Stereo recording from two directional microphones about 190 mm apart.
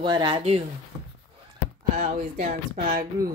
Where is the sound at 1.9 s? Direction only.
40° right (ahead or behind).